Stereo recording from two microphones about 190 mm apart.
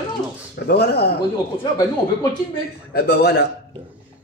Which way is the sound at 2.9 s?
55° left (ahead or behind).